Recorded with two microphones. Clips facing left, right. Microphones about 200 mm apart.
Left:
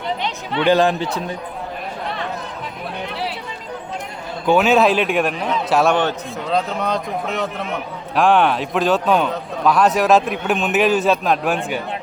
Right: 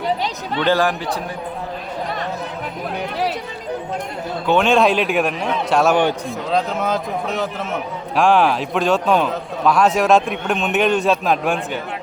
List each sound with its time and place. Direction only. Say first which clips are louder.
0.6 s speech: left 3 dB; 20° left (ahead or behind)
4.4 s a man's voice: left 1 dB; 5° left (ahead or behind)